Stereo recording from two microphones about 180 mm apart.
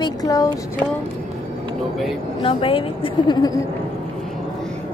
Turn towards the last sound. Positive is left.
turn(degrees=25)  # may be behind; listen again after turning